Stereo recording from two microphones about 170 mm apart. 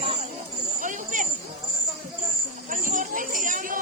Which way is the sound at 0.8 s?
50° right (ahead or behind).